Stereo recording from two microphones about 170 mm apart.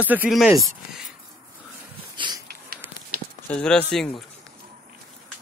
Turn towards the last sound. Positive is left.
turn(degrees=0)  # may be behind; listen again after turning